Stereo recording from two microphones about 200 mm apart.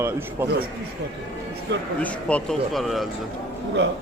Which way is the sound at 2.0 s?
5° left (ahead or behind).